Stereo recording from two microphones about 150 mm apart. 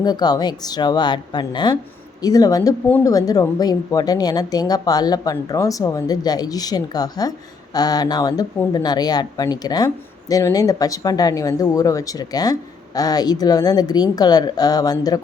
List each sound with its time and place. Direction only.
0.0 s a woman's voice: 25° left (ahead or behind)